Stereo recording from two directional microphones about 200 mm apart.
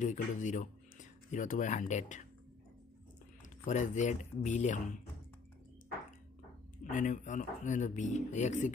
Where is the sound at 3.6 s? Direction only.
35° left (ahead or behind).